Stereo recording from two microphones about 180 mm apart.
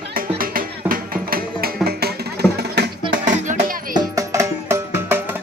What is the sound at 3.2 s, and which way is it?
Music, 45° right (ahead or behind).